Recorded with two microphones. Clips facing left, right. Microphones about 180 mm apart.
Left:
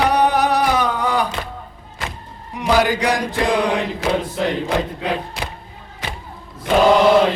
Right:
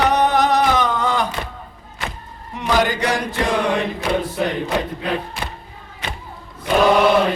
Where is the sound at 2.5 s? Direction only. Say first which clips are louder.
Left 2 dB; 10° left (ahead or behind).